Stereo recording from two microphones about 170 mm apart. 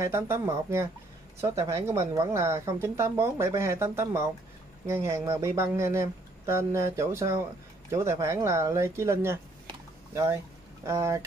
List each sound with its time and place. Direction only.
0.0 s speech: 15° right (ahead or behind)
9.7 s a sound: 20° right (ahead or behind)
10.9 s speech: 15° right (ahead or behind)